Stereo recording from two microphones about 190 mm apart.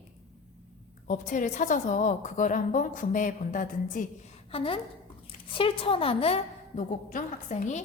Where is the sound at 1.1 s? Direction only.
40° left (ahead or behind).